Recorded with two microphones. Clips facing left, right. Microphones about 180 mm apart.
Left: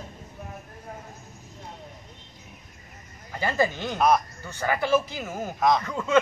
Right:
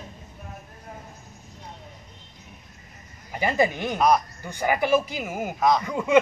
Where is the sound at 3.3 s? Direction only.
15° right (ahead or behind).